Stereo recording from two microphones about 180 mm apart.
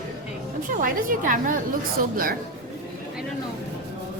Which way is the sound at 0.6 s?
50° right (ahead or behind).